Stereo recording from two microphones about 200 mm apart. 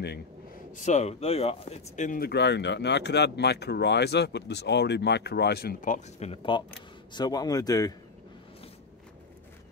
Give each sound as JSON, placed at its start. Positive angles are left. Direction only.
{"t": 0.7, "sound": "a man's voice", "side_deg": 35}